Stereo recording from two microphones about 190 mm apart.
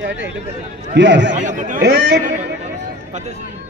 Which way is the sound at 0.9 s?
70° right (ahead or behind).